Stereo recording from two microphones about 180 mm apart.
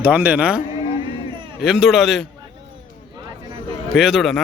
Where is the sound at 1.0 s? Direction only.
30° right (ahead or behind).